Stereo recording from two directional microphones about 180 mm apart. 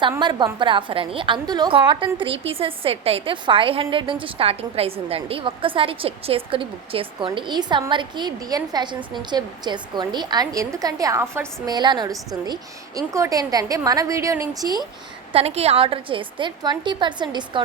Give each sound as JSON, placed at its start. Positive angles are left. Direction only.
{"t": 0.2, "sound": "a woman's voice", "side_deg": -25}
{"t": 15.3, "sound": "a woman's voice", "side_deg": -35}